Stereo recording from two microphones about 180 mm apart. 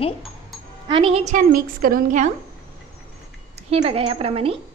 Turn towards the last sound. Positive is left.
turn(degrees=-30)  # may be behind; listen again after turning